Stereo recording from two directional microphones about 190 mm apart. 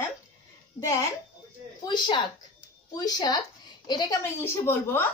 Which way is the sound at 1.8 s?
25° left (ahead or behind).